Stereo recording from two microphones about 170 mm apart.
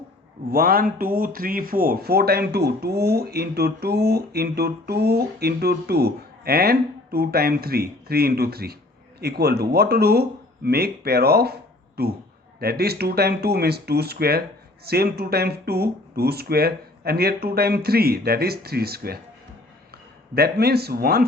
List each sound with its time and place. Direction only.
0.5 s speech: 60° right (ahead or behind)
20.3 s speech: 70° right (ahead or behind)